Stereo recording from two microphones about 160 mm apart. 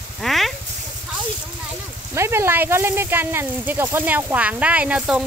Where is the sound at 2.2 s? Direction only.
15° right (ahead or behind).